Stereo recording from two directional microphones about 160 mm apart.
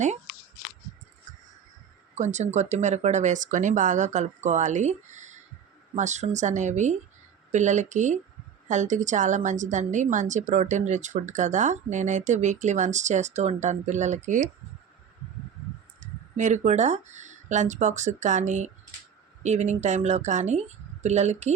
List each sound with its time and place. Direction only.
2.1 s a woman's voice: 45° right (ahead or behind)
16.0 s a woman's voice: 50° right (ahead or behind)